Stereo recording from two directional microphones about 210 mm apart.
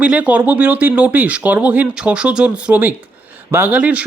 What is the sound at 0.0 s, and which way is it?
Speech, 5° right (ahead or behind).